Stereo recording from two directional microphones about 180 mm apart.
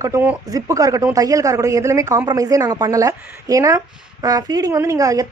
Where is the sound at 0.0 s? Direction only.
15° right (ahead or behind).